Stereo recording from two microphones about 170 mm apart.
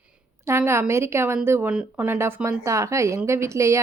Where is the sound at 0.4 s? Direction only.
15° right (ahead or behind).